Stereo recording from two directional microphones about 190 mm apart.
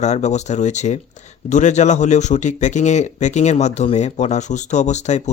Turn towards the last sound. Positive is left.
turn(degrees=35)  # may be behind; listen again after turning